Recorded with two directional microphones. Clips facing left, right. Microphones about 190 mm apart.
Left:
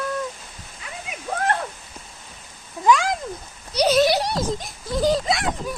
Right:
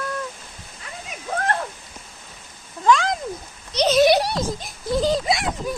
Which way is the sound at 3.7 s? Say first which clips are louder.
Left 1 dB; 10° left (ahead or behind).